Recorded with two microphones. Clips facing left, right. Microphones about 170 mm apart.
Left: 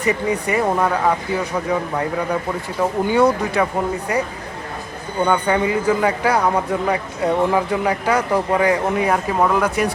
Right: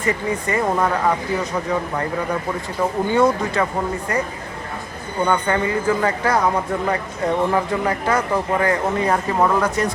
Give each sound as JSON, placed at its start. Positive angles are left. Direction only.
{"t": 0.0, "sound": "speech", "side_deg": 15}
{"t": 3.1, "sound": "speech", "side_deg": 5}